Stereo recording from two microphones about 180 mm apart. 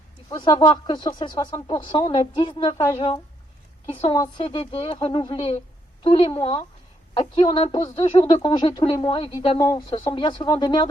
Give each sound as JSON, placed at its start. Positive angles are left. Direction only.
{"t": 0.3, "sound": "speech", "side_deg": 20}
{"t": 9.6, "sound": "speech", "side_deg": 20}